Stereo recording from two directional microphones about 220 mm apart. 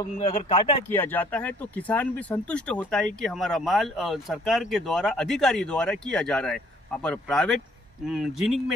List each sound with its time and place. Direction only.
0.0 s speech: 20° left (ahead or behind)
0.8 s speech: 10° left (ahead or behind)